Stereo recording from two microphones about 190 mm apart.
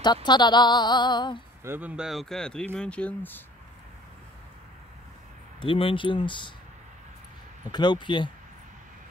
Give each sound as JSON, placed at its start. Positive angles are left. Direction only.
{"t": 0.0, "sound": "speech", "side_deg": 25}
{"t": 1.6, "sound": "speech", "side_deg": -10}
{"t": 5.6, "sound": "speech", "side_deg": 30}
{"t": 7.7, "sound": "speech", "side_deg": 25}